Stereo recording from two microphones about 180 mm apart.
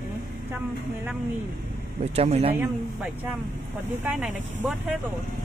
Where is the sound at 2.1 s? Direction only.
35° right (ahead or behind).